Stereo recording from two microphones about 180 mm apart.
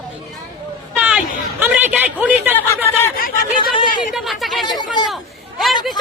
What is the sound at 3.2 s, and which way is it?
Speech, 50° left (ahead or behind).